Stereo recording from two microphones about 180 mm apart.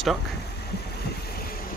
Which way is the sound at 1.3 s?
55° left (ahead or behind).